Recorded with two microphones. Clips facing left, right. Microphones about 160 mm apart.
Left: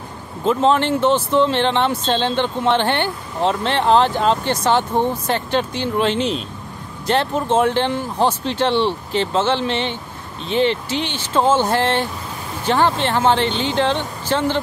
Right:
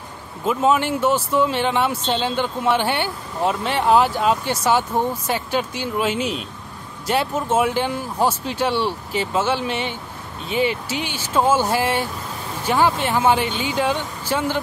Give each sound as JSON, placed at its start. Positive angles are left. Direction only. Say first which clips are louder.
{"t": 0.5, "sound": "speech", "louder": "left 3 dB", "side_deg": -10}